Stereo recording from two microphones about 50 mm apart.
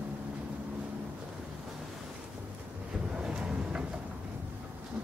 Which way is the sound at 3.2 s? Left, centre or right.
Centre.